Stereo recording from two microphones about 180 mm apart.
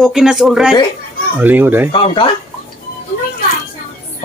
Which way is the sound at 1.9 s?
30° left (ahead or behind).